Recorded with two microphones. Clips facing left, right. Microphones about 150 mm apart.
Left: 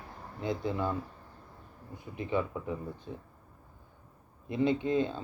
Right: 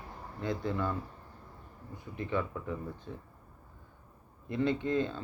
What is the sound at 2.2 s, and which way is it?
Speech, 15° left (ahead or behind).